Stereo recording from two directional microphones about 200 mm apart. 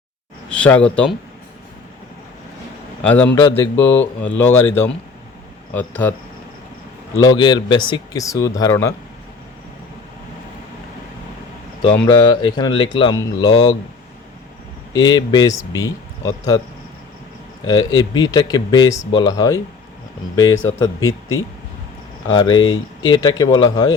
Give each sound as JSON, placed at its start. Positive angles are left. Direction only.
{"t": 0.5, "sound": "speech", "side_deg": 5}
{"t": 3.0, "sound": "a man's voice", "side_deg": 10}
{"t": 7.2, "sound": "speech", "side_deg": 20}
{"t": 12.0, "sound": "speech", "side_deg": 20}
{"t": 14.9, "sound": "speech", "side_deg": 20}
{"t": 17.7, "sound": "speech", "side_deg": 20}
{"t": 22.3, "sound": "speech", "side_deg": 20}